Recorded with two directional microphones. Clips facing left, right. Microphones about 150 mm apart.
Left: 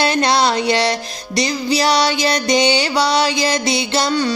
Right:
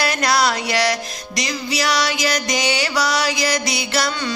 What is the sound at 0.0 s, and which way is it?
Music, 25° left (ahead or behind).